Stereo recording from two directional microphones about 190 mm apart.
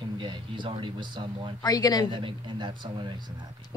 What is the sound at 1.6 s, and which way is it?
Speech, 20° left (ahead or behind).